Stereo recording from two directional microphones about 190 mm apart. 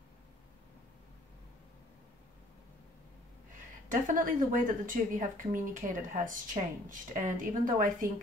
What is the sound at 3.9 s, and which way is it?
Speech, 45° right (ahead or behind).